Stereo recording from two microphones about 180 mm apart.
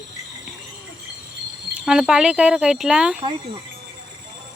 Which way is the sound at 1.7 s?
5° right (ahead or behind).